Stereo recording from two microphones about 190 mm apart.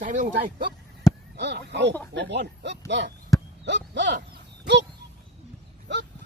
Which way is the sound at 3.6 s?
70° right (ahead or behind).